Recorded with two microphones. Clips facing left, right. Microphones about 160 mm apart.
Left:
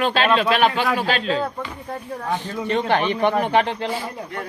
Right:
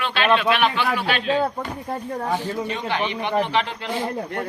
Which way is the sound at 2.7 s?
55° left (ahead or behind).